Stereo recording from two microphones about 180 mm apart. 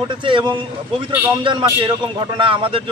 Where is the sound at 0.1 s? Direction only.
25° right (ahead or behind).